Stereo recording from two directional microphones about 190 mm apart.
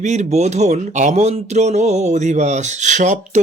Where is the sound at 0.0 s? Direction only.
40° right (ahead or behind).